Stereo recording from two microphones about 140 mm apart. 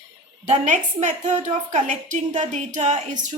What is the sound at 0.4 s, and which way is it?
A woman's voice, 55° right (ahead or behind).